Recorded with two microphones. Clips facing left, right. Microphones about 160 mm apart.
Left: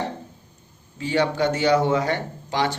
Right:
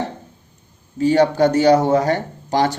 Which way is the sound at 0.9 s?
40° right (ahead or behind).